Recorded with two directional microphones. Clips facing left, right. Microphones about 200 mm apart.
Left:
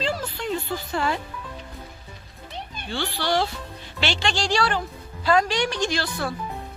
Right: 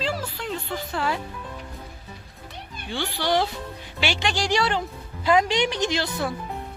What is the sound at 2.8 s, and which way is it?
A woman's voice, 15° right (ahead or behind).